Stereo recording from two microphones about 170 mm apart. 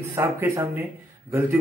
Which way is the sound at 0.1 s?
15° right (ahead or behind).